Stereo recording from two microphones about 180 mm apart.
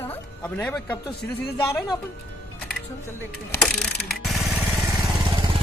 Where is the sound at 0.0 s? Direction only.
10° left (ahead or behind).